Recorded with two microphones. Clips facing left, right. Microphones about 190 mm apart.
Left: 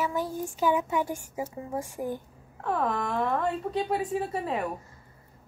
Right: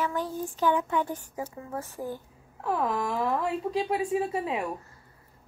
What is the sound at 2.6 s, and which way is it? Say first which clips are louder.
Speech: even; centre (ahead or behind).